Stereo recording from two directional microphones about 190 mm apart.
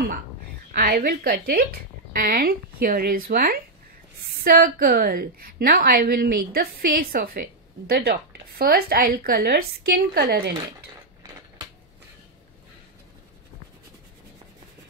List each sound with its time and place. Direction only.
0.7 s a woman's voice: 55° right (ahead or behind)